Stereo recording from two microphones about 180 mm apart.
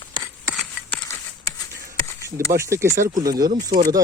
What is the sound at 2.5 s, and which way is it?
Speech, 15° right (ahead or behind).